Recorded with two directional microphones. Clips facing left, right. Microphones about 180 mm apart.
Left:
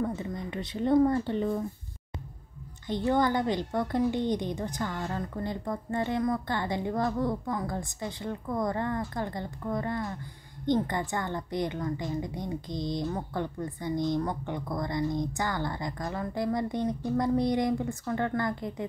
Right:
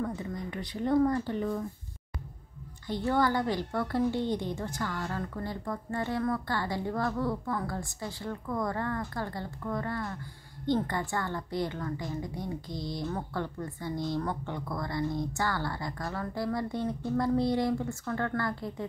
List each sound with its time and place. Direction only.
0.0 s speech: 25° left (ahead or behind)
2.9 s a woman's voice: 20° left (ahead or behind)